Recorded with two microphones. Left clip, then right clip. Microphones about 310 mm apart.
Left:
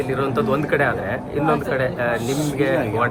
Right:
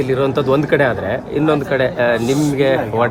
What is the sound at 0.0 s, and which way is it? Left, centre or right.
Speech, centre.